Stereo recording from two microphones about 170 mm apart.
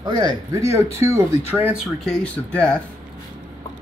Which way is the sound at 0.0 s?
25° right (ahead or behind).